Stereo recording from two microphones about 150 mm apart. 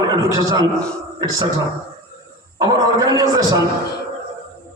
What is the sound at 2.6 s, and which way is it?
A man's voice, 25° right (ahead or behind).